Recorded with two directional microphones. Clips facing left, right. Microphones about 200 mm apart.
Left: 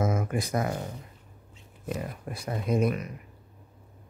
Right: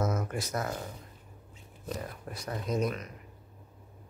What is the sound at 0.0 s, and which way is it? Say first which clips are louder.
Speech: left 4 dB; 10° left (ahead or behind).